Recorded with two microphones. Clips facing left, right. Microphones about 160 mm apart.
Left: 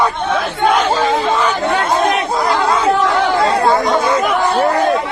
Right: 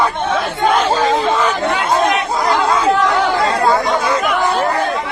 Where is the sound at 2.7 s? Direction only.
30° left (ahead or behind).